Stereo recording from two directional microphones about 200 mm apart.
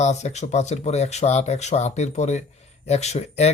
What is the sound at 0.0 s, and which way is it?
Speech, 35° left (ahead or behind).